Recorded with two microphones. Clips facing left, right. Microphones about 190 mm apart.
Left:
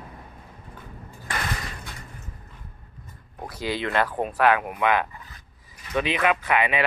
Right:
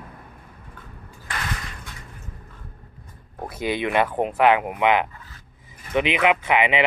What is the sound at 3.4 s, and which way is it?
Speech, 20° right (ahead or behind).